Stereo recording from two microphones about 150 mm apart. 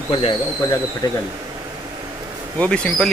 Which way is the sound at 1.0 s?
30° left (ahead or behind).